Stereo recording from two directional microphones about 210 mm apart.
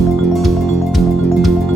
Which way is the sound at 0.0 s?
Centre (ahead or behind).